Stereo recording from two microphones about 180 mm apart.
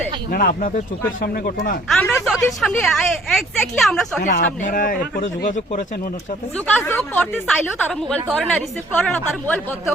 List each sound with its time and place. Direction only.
0.3 s speech: 50° left (ahead or behind)
1.9 s speech: 10° left (ahead or behind)
4.2 s speech: 45° left (ahead or behind)
6.7 s speech: 10° left (ahead or behind)